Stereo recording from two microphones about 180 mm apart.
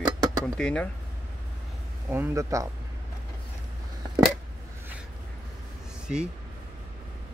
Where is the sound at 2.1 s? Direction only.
15° right (ahead or behind).